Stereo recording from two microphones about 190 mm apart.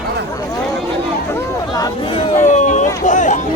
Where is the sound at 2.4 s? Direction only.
40° left (ahead or behind).